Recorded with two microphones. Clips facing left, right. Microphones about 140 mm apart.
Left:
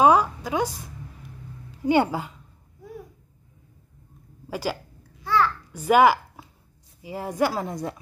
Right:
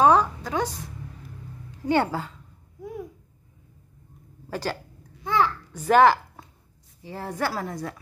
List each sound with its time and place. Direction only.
0.0 s a sound: 10° left (ahead or behind)
1.9 s a woman's voice: 15° left (ahead or behind)
4.5 s a child's voice: 10° left (ahead or behind)